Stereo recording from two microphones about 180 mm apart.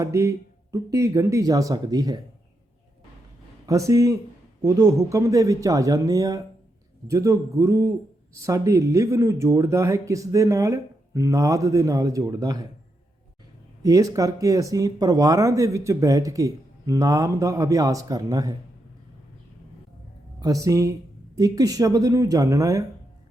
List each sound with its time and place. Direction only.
0.0 s speech: 15° right (ahead or behind)
3.7 s speech: 15° right (ahead or behind)
13.8 s speech: 20° right (ahead or behind)
20.4 s speech: 20° right (ahead or behind)